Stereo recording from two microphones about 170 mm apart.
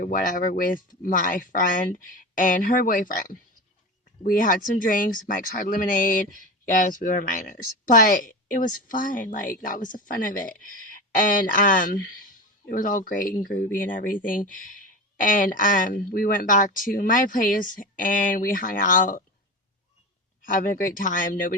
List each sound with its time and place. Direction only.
0.0 s speech: 50° left (ahead or behind)
10.7 s speech: 50° right (ahead or behind)
11.2 s speech: 55° left (ahead or behind)
20.4 s speech: 55° left (ahead or behind)